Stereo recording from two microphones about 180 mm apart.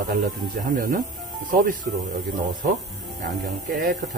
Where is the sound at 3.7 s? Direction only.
45° right (ahead or behind).